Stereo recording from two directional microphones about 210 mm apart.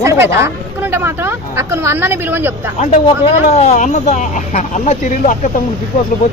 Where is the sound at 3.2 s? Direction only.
35° left (ahead or behind).